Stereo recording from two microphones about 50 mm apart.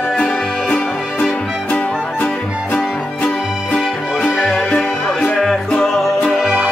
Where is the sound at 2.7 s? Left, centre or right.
Left.